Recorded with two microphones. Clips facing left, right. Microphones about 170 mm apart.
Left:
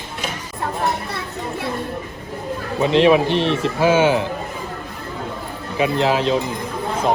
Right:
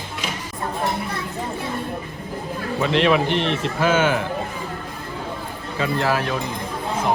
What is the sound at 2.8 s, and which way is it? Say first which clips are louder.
Speech: left 5 dB; 20° left (ahead or behind).